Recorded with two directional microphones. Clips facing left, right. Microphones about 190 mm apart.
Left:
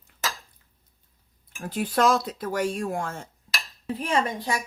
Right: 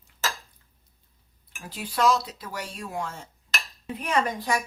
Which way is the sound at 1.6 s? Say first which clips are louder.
Left 2 dB; 50° left (ahead or behind).